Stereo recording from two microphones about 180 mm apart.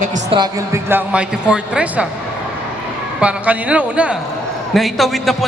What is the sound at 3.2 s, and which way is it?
A man's voice, 5° right (ahead or behind).